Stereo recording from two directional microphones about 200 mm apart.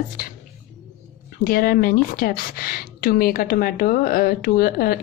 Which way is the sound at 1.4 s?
45° left (ahead or behind).